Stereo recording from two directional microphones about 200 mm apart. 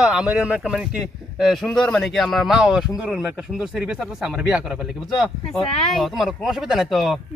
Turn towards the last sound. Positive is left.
turn(degrees=0)  # may be behind; listen again after turning